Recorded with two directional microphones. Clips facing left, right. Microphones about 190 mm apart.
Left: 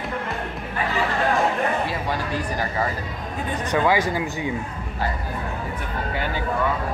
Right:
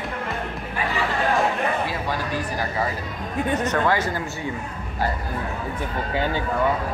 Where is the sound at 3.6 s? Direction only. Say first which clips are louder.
Left 3 dB; 10° left (ahead or behind).